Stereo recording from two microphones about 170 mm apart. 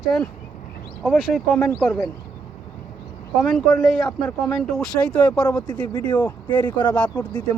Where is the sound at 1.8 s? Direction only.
10° left (ahead or behind).